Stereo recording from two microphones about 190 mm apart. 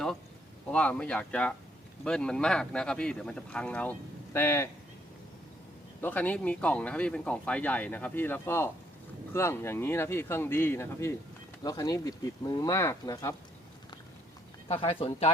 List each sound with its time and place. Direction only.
0.7 s speech: 5° left (ahead or behind)
6.0 s speech: 10° left (ahead or behind)
14.7 s speech: 30° left (ahead or behind)